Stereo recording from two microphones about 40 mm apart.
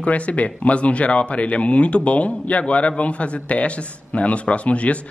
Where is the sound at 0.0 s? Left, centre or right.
Left.